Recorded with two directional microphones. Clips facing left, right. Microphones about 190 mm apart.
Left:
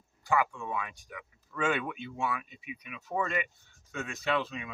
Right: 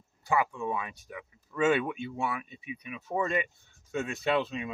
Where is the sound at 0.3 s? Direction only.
20° right (ahead or behind).